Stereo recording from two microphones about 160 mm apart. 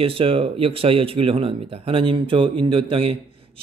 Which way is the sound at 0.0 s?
35° right (ahead or behind).